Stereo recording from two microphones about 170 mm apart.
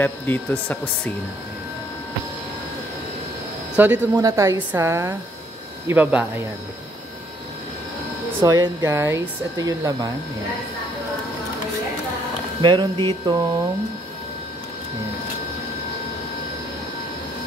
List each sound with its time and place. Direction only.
0.0 s speech: 10° left (ahead or behind)
3.7 s a man's voice: 10° right (ahead or behind)
8.4 s speech: 20° right (ahead or behind)
12.6 s speech: 25° right (ahead or behind)